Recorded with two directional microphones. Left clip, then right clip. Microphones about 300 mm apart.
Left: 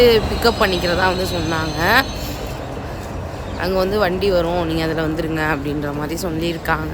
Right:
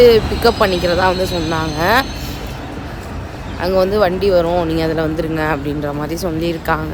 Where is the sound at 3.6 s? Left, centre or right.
Centre.